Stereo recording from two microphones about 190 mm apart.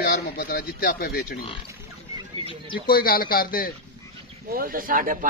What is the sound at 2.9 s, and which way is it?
Speech, 50° left (ahead or behind).